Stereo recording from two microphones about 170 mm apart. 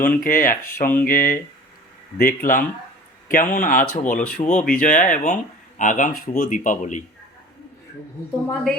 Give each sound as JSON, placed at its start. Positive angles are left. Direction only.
{"t": 0.0, "sound": "speech", "side_deg": 55}